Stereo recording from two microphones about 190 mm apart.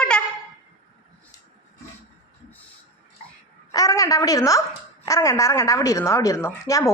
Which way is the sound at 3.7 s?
20° left (ahead or behind).